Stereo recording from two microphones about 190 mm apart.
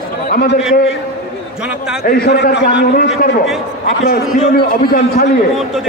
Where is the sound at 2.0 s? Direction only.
55° left (ahead or behind).